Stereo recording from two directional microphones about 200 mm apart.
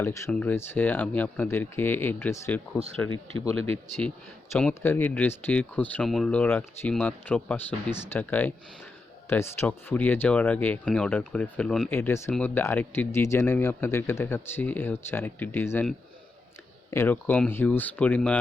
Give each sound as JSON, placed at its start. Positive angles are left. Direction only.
{"t": 0.0, "sound": "speech", "side_deg": 15}
{"t": 3.1, "sound": "speech", "side_deg": -25}
{"t": 4.5, "sound": "speech", "side_deg": 5}